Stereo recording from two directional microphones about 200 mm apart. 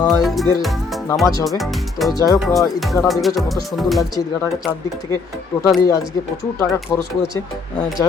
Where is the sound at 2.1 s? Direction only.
15° left (ahead or behind).